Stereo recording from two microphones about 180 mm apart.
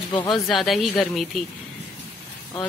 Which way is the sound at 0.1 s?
25° left (ahead or behind).